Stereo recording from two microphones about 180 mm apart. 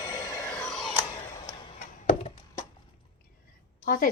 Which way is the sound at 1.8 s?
45° left (ahead or behind).